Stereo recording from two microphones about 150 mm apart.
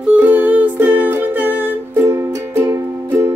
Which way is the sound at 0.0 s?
10° right (ahead or behind).